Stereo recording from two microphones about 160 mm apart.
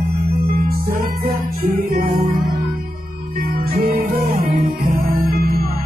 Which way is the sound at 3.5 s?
70° right (ahead or behind).